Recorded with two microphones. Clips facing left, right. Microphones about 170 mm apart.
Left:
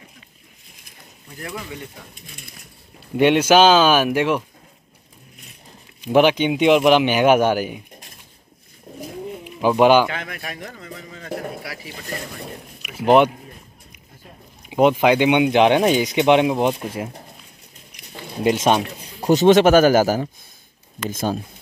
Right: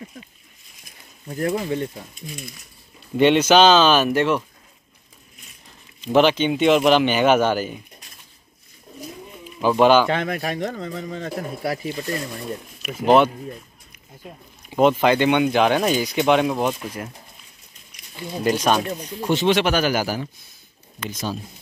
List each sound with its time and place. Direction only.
1.3 s speech: 40° right (ahead or behind)
3.2 s speech: 10° left (ahead or behind)
5.9 s speech: 10° left (ahead or behind)
9.6 s speech: 15° left (ahead or behind)
10.0 s speech: 35° right (ahead or behind)
12.8 s speech: 15° left (ahead or behind)
14.7 s speech: 10° left (ahead or behind)
18.4 s speech: 25° left (ahead or behind)
19.2 s a man's voice: 45° left (ahead or behind)